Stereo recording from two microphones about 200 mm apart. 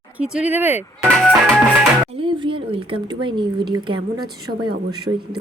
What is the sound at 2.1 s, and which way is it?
A woman's voice, 25° right (ahead or behind).